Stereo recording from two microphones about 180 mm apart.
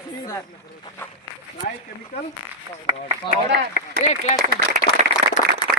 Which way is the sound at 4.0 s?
40° left (ahead or behind).